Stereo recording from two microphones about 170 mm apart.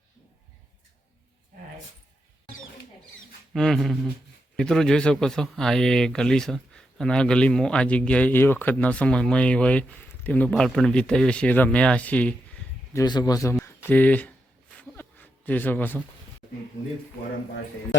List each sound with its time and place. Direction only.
3.5 s speech: centre (ahead or behind)
12.9 s a man's voice: 20° left (ahead or behind)
13.9 s speech: 10° left (ahead or behind)
14.8 s a sound: 10° left (ahead or behind)